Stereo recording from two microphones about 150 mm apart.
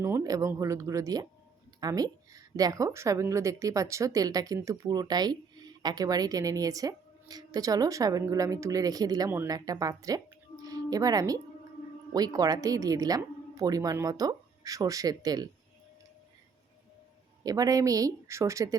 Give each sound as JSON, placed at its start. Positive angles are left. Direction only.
{"t": 0.0, "sound": "a woman's voice", "side_deg": -20}
{"t": 10.6, "sound": "music", "side_deg": -25}
{"t": 12.1, "sound": "a woman's voice", "side_deg": -25}
{"t": 17.4, "sound": "a woman's voice", "side_deg": -25}